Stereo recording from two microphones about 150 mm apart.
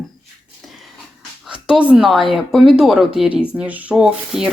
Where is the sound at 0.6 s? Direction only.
Centre (ahead or behind).